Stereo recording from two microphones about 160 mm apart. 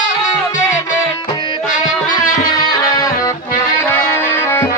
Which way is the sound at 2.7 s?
25° left (ahead or behind).